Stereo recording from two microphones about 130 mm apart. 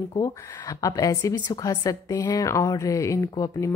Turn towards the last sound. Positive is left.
turn(degrees=25)  # may be behind; listen again after turning